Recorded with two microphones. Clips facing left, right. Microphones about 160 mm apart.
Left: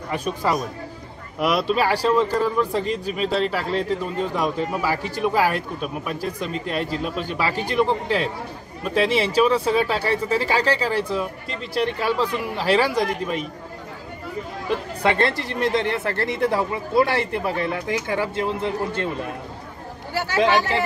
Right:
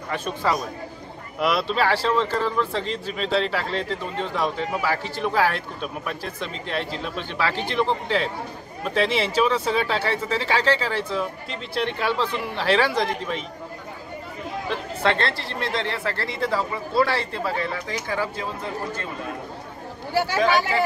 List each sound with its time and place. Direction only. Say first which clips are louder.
0.1 s speech: left 1 dB; 10° left (ahead or behind)
1.7 s speech: left 2 dB; 10° left (ahead or behind)
14.7 s speech: left 2 dB; 10° left (ahead or behind)
20.2 s speech: left 1 dB; 15° right (ahead or behind)